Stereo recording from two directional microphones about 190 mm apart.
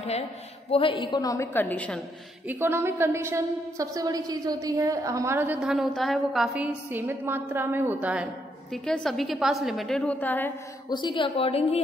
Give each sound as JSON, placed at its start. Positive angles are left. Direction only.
{"t": 0.7, "sound": "a woman's voice", "side_deg": 30}
{"t": 2.4, "sound": "a woman's voice", "side_deg": -10}
{"t": 10.9, "sound": "a woman's voice", "side_deg": 25}